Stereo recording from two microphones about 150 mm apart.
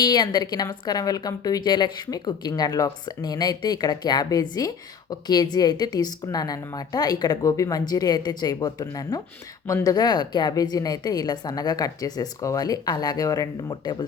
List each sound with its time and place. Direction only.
0.0 s speech: 25° left (ahead or behind)